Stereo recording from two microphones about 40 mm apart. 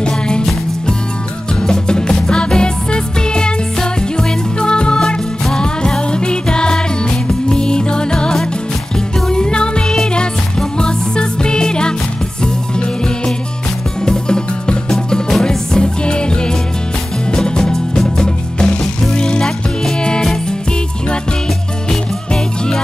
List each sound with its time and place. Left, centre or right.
1.6 s music: centre